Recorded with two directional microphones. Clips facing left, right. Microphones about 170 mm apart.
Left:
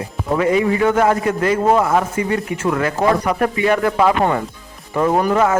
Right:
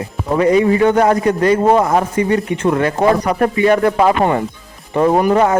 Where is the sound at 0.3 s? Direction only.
35° right (ahead or behind).